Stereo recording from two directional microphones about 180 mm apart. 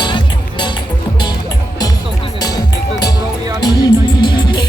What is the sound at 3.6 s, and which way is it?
Music, 25° left (ahead or behind).